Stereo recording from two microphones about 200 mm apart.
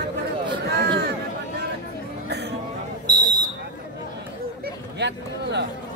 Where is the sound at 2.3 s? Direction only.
55° right (ahead or behind).